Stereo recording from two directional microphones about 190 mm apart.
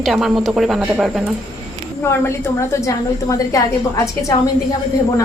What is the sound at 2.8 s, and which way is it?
A woman's voice, 15° left (ahead or behind).